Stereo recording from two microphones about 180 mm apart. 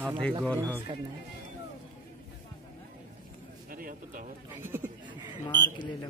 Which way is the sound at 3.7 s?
50° right (ahead or behind).